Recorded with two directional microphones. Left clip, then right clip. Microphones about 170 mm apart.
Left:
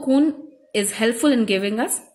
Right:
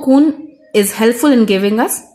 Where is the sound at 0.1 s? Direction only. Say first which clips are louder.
Right 8 dB; 40° right (ahead or behind).